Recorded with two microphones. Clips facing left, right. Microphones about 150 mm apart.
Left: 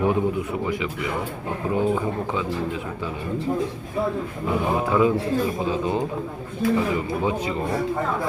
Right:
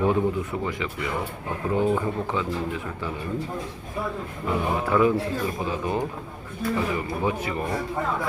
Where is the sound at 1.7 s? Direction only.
15° left (ahead or behind).